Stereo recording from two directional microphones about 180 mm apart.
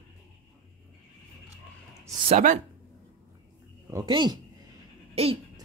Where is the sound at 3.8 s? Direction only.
20° right (ahead or behind).